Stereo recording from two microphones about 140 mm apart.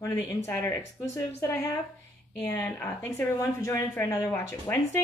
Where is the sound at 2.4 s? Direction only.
15° left (ahead or behind).